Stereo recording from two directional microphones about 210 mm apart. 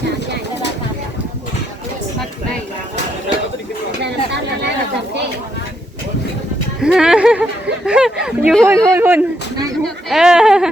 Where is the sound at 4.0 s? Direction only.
55° right (ahead or behind).